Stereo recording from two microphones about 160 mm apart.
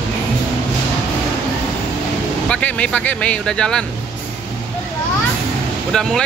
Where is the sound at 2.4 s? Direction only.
5° left (ahead or behind).